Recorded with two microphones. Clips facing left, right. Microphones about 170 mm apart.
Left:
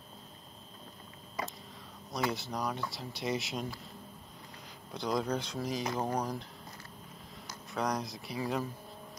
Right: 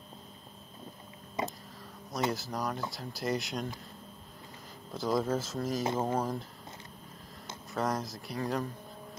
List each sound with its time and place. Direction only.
1.4 s a sound: 20° right (ahead or behind)
2.3 s speech: centre (ahead or behind)
4.9 s speech: centre (ahead or behind)
7.7 s speech: centre (ahead or behind)